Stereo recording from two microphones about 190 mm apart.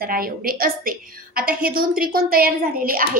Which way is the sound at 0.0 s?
50° right (ahead or behind).